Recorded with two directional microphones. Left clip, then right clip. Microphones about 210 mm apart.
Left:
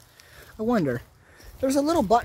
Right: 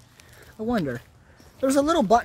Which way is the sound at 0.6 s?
35° left (ahead or behind).